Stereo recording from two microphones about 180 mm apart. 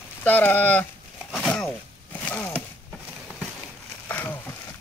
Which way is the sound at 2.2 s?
10° left (ahead or behind).